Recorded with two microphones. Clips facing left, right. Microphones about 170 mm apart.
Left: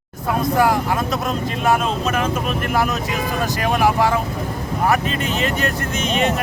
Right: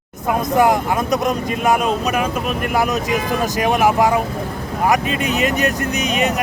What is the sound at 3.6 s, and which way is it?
Speech, 20° right (ahead or behind).